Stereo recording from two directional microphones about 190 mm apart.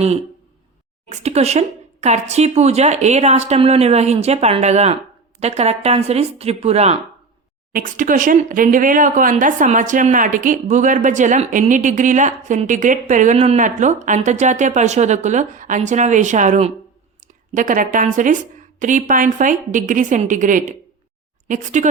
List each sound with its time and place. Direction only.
1.1 s speech: 35° right (ahead or behind)
7.7 s a woman's voice: 45° right (ahead or behind)